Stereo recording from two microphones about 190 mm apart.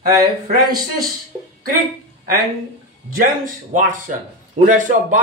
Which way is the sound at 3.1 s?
45° right (ahead or behind).